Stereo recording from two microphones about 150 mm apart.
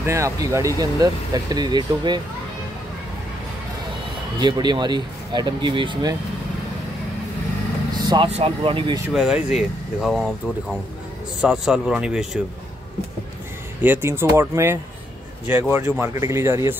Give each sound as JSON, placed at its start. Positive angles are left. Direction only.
{"t": 0.0, "sound": "speech", "side_deg": -20}
{"t": 4.4, "sound": "speech", "side_deg": -30}
{"t": 7.9, "sound": "vehicle", "side_deg": -30}
{"t": 8.3, "sound": "speech", "side_deg": -40}
{"t": 9.1, "sound": "speech", "side_deg": 0}
{"t": 13.8, "sound": "speech", "side_deg": -15}